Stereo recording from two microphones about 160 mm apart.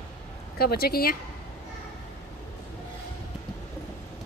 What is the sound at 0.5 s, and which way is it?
Speech, 70° left (ahead or behind).